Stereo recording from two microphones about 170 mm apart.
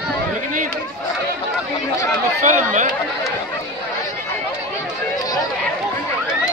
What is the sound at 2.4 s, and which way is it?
Speech, 50° right (ahead or behind).